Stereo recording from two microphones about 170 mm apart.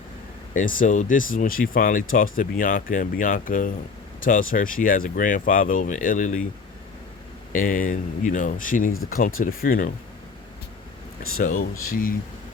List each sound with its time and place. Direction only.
0.5 s speech: 50° left (ahead or behind)
7.5 s speech: 55° left (ahead or behind)
11.3 s speech: 55° left (ahead or behind)